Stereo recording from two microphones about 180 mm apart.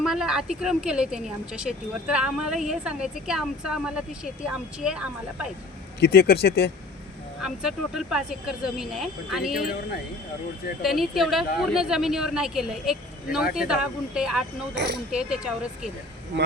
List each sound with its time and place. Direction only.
0.0 s a woman's voice: 5° right (ahead or behind)
6.0 s speech: 60° left (ahead or behind)
7.4 s a woman's voice: 5° right (ahead or behind)
10.8 s a woman's voice: centre (ahead or behind)
14.8 s speech: 70° right (ahead or behind)
15.1 s a woman's voice: 5° right (ahead or behind)